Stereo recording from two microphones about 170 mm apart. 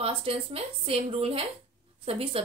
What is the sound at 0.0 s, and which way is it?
Speech, 35° right (ahead or behind).